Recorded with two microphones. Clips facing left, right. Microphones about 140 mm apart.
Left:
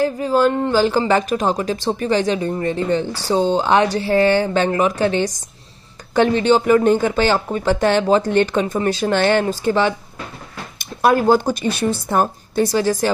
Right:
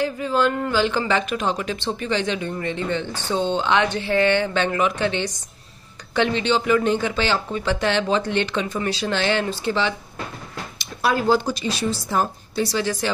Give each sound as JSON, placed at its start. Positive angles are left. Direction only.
{"t": 0.0, "sound": "speech", "side_deg": 40}